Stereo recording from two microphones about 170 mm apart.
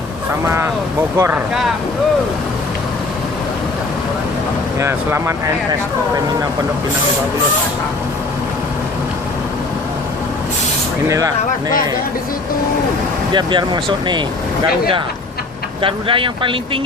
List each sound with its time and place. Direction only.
0.4 s speech: 15° right (ahead or behind)
4.8 s speech: 15° right (ahead or behind)
13.3 s speech: 25° right (ahead or behind)
15.8 s speech: 30° right (ahead or behind)